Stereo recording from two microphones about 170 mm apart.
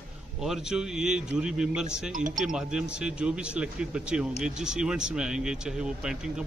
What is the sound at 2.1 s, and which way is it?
Speech, 50° right (ahead or behind).